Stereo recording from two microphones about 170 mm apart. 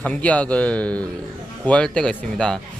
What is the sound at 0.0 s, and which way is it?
Speech, 10° left (ahead or behind).